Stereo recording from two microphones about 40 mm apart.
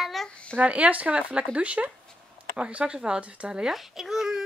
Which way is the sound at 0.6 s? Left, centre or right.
Right.